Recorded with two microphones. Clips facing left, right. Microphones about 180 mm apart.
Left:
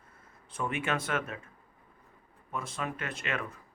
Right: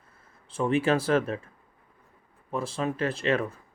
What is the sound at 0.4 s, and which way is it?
Speech, 30° right (ahead or behind).